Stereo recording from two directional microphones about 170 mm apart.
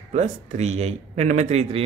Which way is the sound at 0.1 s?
40° right (ahead or behind).